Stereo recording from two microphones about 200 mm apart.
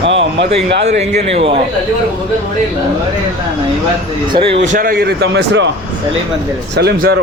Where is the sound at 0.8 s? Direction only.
35° right (ahead or behind).